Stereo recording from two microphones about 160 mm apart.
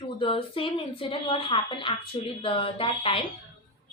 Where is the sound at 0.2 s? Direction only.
35° left (ahead or behind).